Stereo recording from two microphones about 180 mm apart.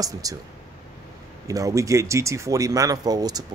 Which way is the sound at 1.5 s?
20° right (ahead or behind).